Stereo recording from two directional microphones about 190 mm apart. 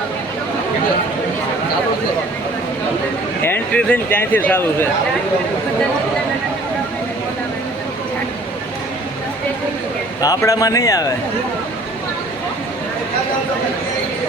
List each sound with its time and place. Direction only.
3.4 s speech: 10° left (ahead or behind)
10.2 s speech: 20° left (ahead or behind)